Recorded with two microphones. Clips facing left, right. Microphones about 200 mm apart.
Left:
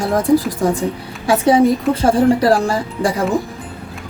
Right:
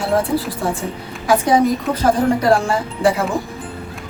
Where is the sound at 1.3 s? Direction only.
30° left (ahead or behind).